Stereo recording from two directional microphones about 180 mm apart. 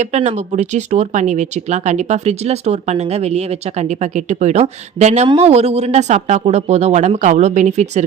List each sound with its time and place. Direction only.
0.0 s speech: 40° right (ahead or behind)